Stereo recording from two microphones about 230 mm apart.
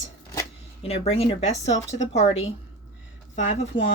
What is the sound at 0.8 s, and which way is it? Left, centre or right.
Speech, left.